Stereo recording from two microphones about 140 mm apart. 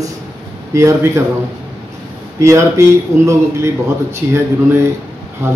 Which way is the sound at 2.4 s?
20° right (ahead or behind).